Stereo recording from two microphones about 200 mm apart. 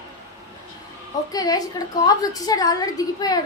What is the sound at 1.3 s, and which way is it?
A woman's voice, 20° left (ahead or behind).